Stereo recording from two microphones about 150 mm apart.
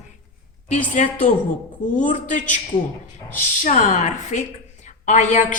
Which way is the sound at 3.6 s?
55° left (ahead or behind).